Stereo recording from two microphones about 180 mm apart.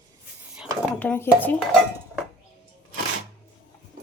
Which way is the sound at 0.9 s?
10° left (ahead or behind).